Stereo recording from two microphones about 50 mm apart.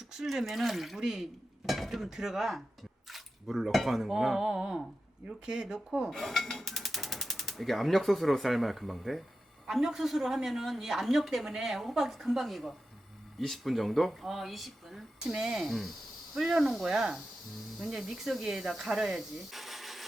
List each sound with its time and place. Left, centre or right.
0.1 s a woman's voice: centre
6.1 s a woman's voice: centre
15.3 s speech: centre
15.5 s a woman's voice: centre